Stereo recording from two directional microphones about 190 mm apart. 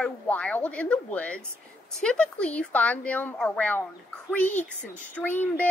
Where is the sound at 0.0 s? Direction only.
5° left (ahead or behind).